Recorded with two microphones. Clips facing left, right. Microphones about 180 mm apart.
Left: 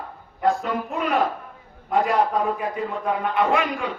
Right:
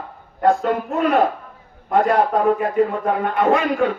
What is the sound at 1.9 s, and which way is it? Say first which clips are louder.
A man's voice: right 4 dB; 55° right (ahead or behind).